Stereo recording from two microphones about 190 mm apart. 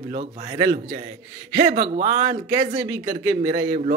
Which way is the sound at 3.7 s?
45° right (ahead or behind).